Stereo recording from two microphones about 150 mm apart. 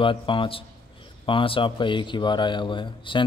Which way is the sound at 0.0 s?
35° left (ahead or behind).